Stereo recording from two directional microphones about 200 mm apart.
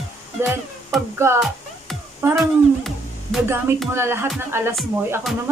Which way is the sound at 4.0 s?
10° right (ahead or behind).